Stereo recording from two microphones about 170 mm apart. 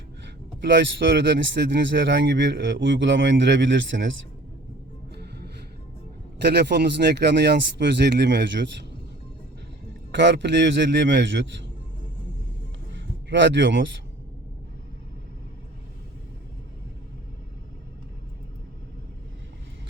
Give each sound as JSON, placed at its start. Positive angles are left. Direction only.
{"t": 0.6, "sound": "speech", "side_deg": -90}
{"t": 6.4, "sound": "speech", "side_deg": -75}
{"t": 10.1, "sound": "speech", "side_deg": -90}
{"t": 13.0, "sound": "speech", "side_deg": -90}